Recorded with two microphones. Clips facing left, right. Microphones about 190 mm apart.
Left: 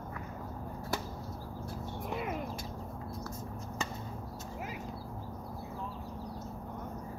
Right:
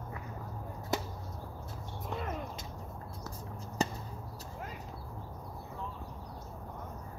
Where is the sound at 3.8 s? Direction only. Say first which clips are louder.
Right 7 dB; 35° right (ahead or behind).